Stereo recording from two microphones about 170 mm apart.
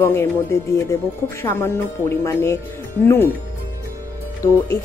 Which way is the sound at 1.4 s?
15° left (ahead or behind).